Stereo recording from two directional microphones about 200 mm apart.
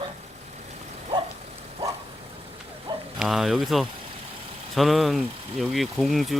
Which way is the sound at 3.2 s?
Centre (ahead or behind).